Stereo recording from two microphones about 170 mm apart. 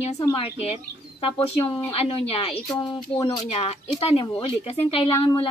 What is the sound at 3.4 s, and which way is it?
Speech, 40° left (ahead or behind).